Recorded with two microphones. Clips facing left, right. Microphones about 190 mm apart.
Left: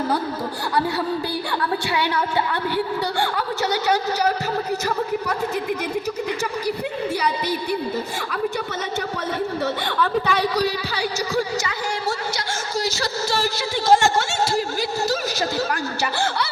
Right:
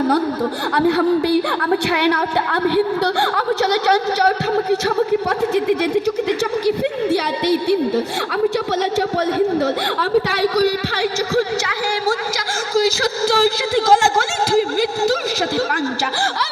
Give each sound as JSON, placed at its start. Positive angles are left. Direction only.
{"t": 0.9, "sound": "a woman's voice", "side_deg": -70}
{"t": 10.6, "sound": "speech", "side_deg": -90}